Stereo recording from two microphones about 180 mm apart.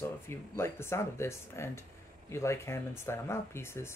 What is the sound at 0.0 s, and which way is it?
Speech, 15° left (ahead or behind).